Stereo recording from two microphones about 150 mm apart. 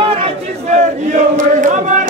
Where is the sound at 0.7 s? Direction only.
55° right (ahead or behind).